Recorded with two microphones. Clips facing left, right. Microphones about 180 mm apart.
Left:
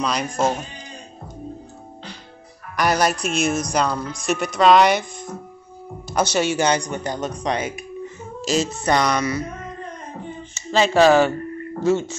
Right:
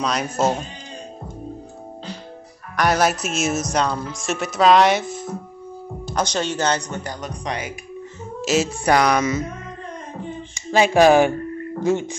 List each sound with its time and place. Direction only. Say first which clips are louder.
0.0 s speech: even; centre (ahead or behind)
2.7 s speech: right 1 dB; centre (ahead or behind)
6.1 s speech: left 3 dB; 10° left (ahead or behind)
8.4 s speech: right 1 dB; 5° right (ahead or behind)
10.5 s speech: right 1 dB; 10° right (ahead or behind)